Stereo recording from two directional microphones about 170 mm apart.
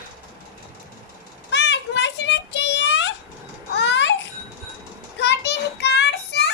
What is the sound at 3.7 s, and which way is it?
Babbling, 90° left.